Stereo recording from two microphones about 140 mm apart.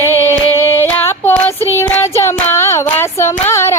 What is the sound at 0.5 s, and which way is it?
Child singing, 15° left (ahead or behind).